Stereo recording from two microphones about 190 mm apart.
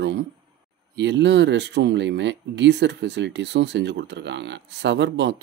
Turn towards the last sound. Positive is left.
turn(degrees=-65)  # may be behind; listen again after turning